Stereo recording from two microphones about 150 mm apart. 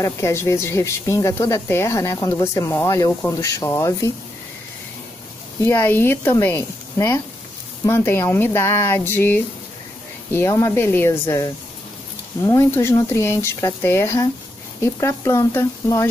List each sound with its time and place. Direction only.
0.0 s speech: 20° left (ahead or behind)
5.6 s speech: 15° left (ahead or behind)